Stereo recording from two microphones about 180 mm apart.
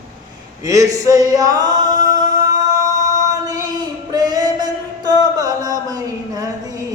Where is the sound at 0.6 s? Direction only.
20° right (ahead or behind).